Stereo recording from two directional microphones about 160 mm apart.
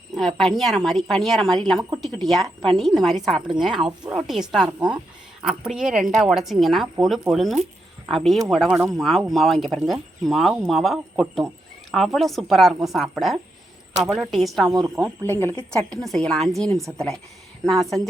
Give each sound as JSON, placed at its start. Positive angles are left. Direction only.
{"t": 0.2, "sound": "a woman's voice", "side_deg": 0}
{"t": 14.7, "sound": "a woman's voice", "side_deg": -20}
{"t": 15.2, "sound": "a woman's voice", "side_deg": 15}
{"t": 15.9, "sound": "a woman's voice", "side_deg": 5}